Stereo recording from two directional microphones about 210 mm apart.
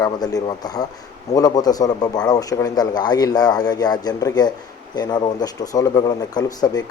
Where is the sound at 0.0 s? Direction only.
20° left (ahead or behind).